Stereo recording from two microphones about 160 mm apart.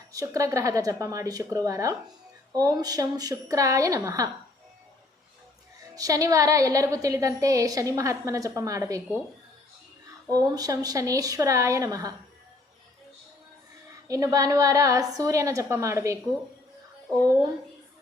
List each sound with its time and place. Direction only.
0.1 s a woman's voice: 20° right (ahead or behind)
5.9 s a woman's voice: 20° right (ahead or behind)
10.3 s a woman's voice: 25° right (ahead or behind)
14.1 s a woman's voice: 20° right (ahead or behind)